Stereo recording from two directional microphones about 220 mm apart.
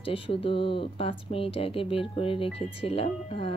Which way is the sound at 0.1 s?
25° left (ahead or behind).